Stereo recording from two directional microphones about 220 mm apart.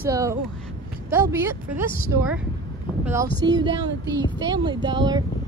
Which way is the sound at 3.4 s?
20° right (ahead or behind).